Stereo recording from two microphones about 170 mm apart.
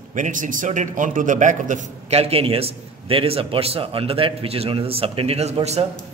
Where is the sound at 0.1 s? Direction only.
50° right (ahead or behind).